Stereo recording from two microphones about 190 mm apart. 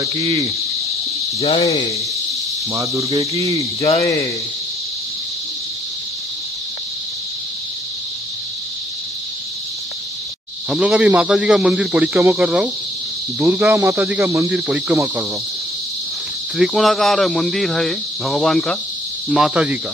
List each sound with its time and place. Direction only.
0.2 s cricket: 20° right (ahead or behind)
1.4 s cricket: 30° left (ahead or behind)
2.7 s cricket: 15° right (ahead or behind)
3.1 s cricket: 30° right (ahead or behind)
10.7 s speech: 5° right (ahead or behind)
13.4 s cricket: 5° right (ahead or behind)
16.5 s speech: centre (ahead or behind)